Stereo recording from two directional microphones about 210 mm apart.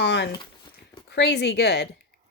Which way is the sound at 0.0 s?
55° left (ahead or behind).